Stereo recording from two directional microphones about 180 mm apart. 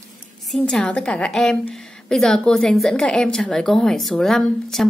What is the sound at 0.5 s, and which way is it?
A woman's voice, 5° left (ahead or behind).